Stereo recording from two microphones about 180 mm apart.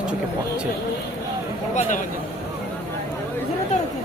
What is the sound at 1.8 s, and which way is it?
Speech, 45° left (ahead or behind).